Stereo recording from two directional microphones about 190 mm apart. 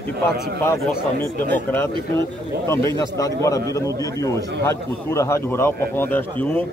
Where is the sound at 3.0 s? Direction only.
15° left (ahead or behind).